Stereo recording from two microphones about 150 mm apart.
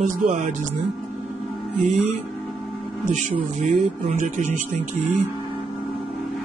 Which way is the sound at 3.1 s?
50° right (ahead or behind).